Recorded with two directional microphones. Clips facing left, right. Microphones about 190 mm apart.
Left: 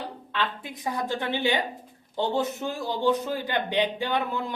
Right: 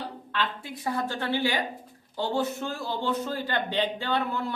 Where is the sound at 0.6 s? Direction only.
15° left (ahead or behind).